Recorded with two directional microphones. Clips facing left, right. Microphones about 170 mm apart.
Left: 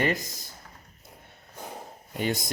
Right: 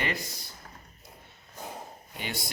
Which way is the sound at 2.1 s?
40° left (ahead or behind).